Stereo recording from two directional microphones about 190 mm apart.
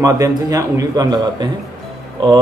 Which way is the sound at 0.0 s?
15° right (ahead or behind).